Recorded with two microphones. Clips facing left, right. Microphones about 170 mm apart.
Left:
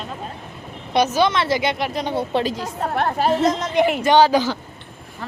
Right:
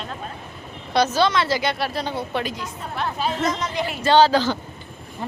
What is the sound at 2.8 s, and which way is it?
A woman's voice, 60° left (ahead or behind).